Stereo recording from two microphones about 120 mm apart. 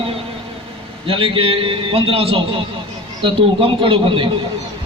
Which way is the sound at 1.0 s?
50° right (ahead or behind).